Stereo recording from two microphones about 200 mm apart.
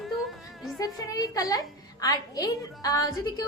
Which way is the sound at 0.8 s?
20° left (ahead or behind).